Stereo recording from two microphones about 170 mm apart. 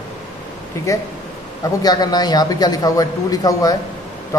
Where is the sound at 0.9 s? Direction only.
20° left (ahead or behind).